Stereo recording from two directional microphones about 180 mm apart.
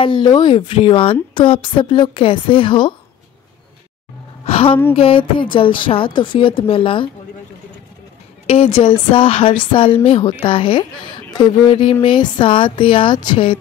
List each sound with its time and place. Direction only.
0.0 s a woman's voice: 25° left (ahead or behind)
4.5 s a woman's voice: 35° left (ahead or behind)
8.5 s a woman's voice: 30° left (ahead or behind)